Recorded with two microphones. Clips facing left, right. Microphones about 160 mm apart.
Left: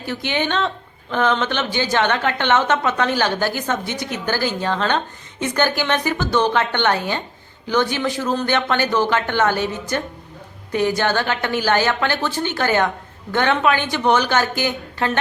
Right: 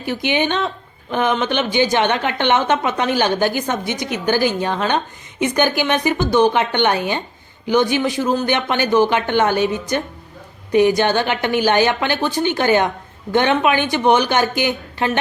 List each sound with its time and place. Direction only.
0.0 s a woman's voice: 15° right (ahead or behind)